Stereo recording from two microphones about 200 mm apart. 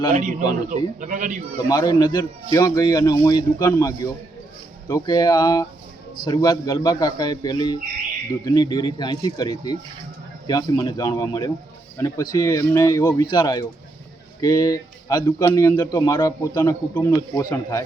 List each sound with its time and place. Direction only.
0.1 s a man's voice: 40° right (ahead or behind)
1.7 s a man's voice: 20° left (ahead or behind)